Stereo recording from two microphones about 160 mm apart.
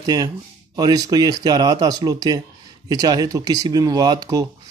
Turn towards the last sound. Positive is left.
turn(degrees=-25)  # may be behind; listen again after turning